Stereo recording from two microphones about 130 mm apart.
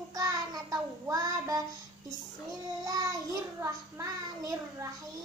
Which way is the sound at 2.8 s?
30° right (ahead or behind).